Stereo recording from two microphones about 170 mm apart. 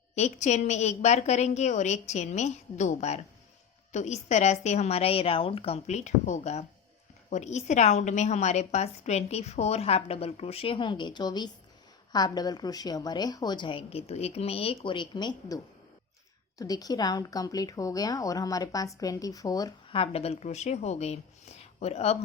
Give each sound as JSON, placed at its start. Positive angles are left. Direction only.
{"t": 0.2, "sound": "a woman's voice", "side_deg": 45}
{"t": 19.9, "sound": "a woman's voice", "side_deg": 35}